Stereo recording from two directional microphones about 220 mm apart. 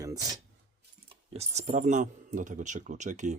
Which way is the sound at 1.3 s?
30° right (ahead or behind).